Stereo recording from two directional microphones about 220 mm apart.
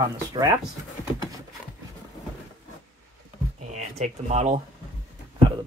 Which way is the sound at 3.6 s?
30° right (ahead or behind).